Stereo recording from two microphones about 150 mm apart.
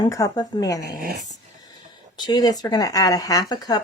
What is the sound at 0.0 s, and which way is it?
Speech, 25° left (ahead or behind).